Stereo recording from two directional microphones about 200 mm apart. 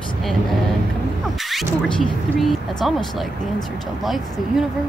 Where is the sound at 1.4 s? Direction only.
Centre (ahead or behind).